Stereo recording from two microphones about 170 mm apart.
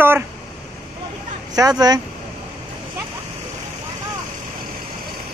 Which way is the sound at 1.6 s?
20° right (ahead or behind).